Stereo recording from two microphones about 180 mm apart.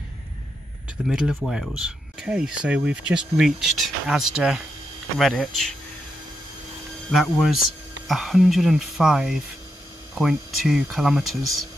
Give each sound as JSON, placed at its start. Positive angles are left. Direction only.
{"t": 1.0, "sound": "speech", "side_deg": -5}
{"t": 7.1, "sound": "speech", "side_deg": 0}